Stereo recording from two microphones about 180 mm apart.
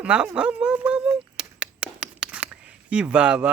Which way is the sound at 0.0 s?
5° right (ahead or behind).